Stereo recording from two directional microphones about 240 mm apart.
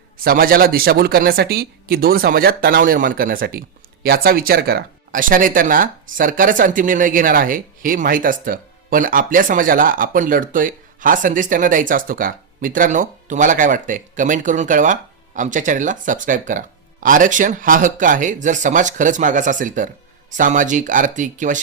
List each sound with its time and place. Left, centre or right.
0.3 s speech: right